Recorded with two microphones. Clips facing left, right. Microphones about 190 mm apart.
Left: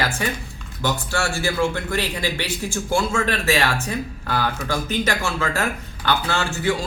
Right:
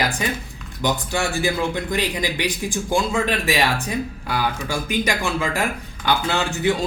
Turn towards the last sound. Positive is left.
turn(degrees=-20)  # may be behind; listen again after turning